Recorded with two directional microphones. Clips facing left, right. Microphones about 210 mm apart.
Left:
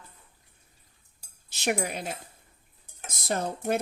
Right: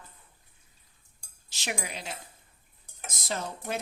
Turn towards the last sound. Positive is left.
turn(degrees=55)  # may be behind; listen again after turning